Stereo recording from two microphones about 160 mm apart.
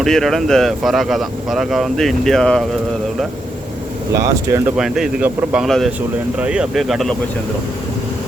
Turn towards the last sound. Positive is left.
turn(degrees=0)  # may be behind; listen again after turning